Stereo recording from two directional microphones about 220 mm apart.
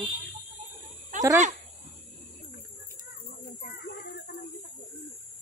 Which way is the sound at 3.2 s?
40° left (ahead or behind).